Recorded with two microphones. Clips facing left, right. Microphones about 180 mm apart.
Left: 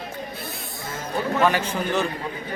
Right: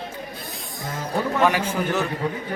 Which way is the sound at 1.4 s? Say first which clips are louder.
Right 1 dB; 10° right (ahead or behind).